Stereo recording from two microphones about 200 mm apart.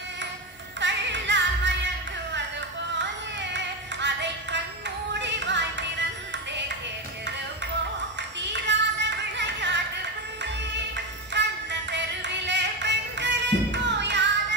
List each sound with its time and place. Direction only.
0.7 s music: 60° right (ahead or behind)
3.0 s music: 60° right (ahead or behind)
8.4 s music: 60° right (ahead or behind)
11.3 s music: 60° right (ahead or behind)